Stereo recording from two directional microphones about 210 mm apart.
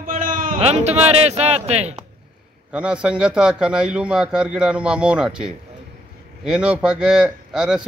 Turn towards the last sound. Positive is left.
turn(degrees=-5)  # may be behind; listen again after turning